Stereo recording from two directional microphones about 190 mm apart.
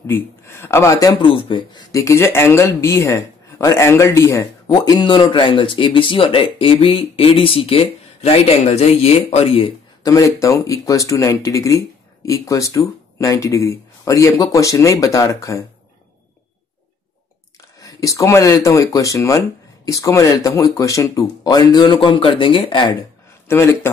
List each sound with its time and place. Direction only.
0.0 s speech: 15° left (ahead or behind)
10.1 s speech: 15° left (ahead or behind)
17.7 s speech: 15° left (ahead or behind)
23.5 s speech: 15° left (ahead or behind)